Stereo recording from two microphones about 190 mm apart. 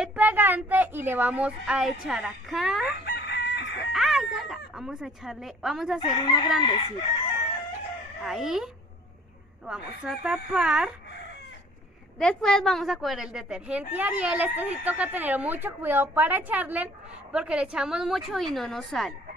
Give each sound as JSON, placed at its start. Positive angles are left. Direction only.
{"t": 0.0, "sound": "a woman's voice", "side_deg": -5}
{"t": 3.1, "sound": "chicken", "side_deg": 60}
{"t": 3.9, "sound": "a sound", "side_deg": 0}
{"t": 5.9, "sound": "speech", "side_deg": 25}
{"t": 8.2, "sound": "a woman's voice", "side_deg": 0}
{"t": 9.7, "sound": "a woman's voice", "side_deg": -5}
{"t": 12.2, "sound": "a woman's voice", "side_deg": 5}